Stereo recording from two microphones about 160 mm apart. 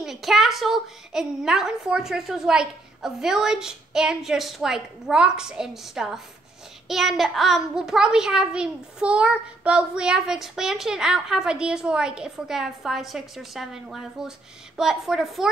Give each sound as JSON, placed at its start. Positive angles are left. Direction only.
{"t": 0.0, "sound": "a child's voice", "side_deg": 0}